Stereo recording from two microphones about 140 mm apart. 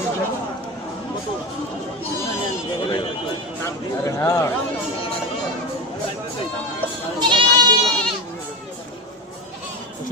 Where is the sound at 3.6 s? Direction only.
25° left (ahead or behind).